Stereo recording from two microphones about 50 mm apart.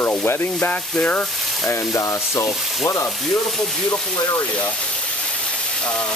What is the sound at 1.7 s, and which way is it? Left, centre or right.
Frying, left.